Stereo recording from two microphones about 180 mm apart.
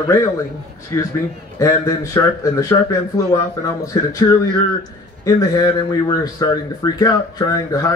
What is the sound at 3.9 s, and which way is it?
Speech, 20° left (ahead or behind).